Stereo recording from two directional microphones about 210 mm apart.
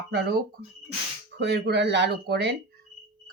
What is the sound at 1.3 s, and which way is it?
Speech, 55° right (ahead or behind).